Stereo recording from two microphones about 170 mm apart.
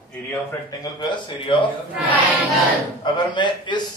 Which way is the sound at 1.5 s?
30° left (ahead or behind).